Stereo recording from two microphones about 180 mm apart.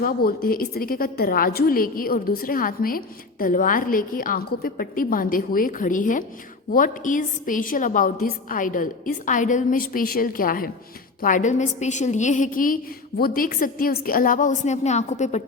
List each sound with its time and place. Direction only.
0.0 s a woman's voice: 55° left (ahead or behind)